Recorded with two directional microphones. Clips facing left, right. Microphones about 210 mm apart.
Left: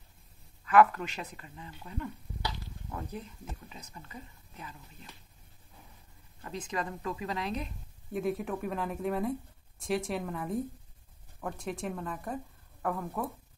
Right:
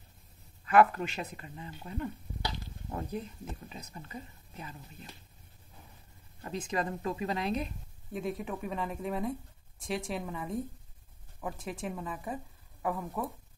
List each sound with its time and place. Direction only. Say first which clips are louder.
0.7 s speech: left 1 dB; 35° right (ahead or behind)
1.1 s speech: right 3 dB; 25° right (ahead or behind)
6.7 s speech: right 2 dB; 30° right (ahead or behind)
8.1 s speech: left 3 dB; centre (ahead or behind)